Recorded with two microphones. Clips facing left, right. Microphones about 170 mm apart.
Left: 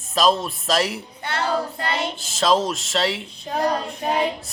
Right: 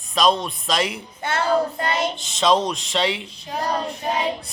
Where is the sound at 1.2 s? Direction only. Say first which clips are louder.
Right 4 dB; 50° right (ahead or behind).